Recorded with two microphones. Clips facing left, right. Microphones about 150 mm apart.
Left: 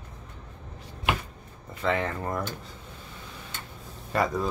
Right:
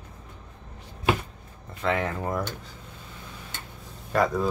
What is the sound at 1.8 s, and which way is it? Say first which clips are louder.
Speech: right 1 dB; 5° right (ahead or behind).